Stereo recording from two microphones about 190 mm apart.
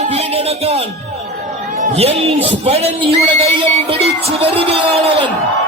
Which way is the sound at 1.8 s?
35° right (ahead or behind).